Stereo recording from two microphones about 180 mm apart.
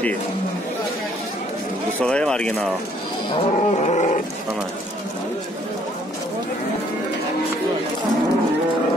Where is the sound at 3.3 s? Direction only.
35° left (ahead or behind).